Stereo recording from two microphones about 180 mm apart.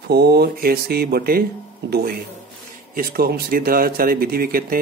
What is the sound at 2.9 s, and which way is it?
Speech, 55° right (ahead or behind).